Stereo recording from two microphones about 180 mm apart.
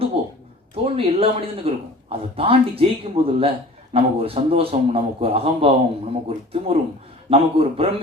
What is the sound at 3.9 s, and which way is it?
Speech, 30° right (ahead or behind).